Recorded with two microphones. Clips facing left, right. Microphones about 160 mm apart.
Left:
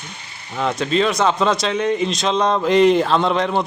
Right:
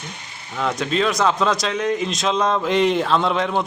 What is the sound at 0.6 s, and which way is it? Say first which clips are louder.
Speech: left 2 dB; centre (ahead or behind).